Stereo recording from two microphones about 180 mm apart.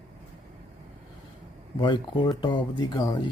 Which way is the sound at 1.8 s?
25° left (ahead or behind).